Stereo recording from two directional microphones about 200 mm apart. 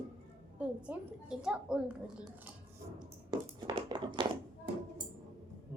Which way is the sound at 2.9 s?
20° right (ahead or behind).